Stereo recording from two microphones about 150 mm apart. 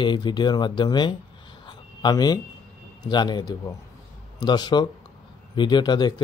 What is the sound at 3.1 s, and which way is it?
Speech, 30° left (ahead or behind).